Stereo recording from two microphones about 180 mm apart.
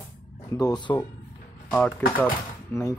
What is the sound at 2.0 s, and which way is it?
Speech, 15° left (ahead or behind).